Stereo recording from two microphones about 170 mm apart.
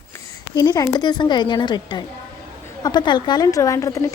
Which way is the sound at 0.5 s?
25° left (ahead or behind).